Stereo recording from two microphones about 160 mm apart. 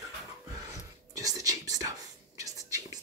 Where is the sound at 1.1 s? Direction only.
20° right (ahead or behind).